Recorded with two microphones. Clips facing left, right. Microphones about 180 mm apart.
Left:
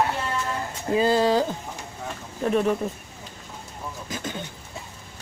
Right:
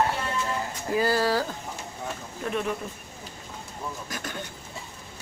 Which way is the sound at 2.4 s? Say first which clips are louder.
Left 7 dB; 40° left (ahead or behind).